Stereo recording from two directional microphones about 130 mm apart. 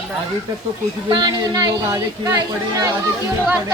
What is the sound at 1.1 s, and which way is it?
A woman's voice, 35° right (ahead or behind).